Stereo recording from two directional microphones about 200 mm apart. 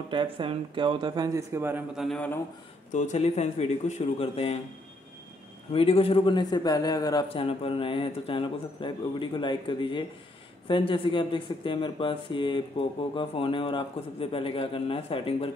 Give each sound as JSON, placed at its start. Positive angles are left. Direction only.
{"t": 0.1, "sound": "speech", "side_deg": -25}
{"t": 2.0, "sound": "speech", "side_deg": 5}
{"t": 2.9, "sound": "speech", "side_deg": 35}
{"t": 5.7, "sound": "speech", "side_deg": 30}